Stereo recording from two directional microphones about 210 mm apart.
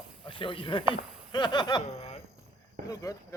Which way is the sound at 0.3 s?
25° left (ahead or behind).